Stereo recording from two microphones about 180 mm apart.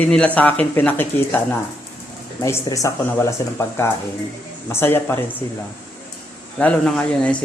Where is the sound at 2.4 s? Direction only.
15° left (ahead or behind).